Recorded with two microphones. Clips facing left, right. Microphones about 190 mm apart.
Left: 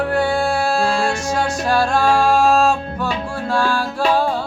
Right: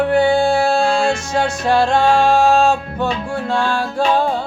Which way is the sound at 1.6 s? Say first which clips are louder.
Right 3 dB; 20° right (ahead or behind).